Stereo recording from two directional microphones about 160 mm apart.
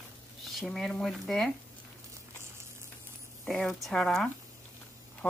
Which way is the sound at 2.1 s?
15° right (ahead or behind).